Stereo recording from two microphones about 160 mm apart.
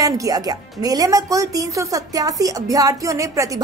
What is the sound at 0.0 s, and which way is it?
Speech, 20° right (ahead or behind).